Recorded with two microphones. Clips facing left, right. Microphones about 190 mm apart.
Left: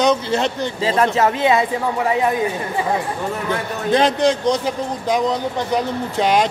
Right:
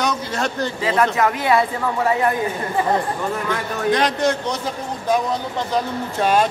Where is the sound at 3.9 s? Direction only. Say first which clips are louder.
Left 4 dB; 20° left (ahead or behind).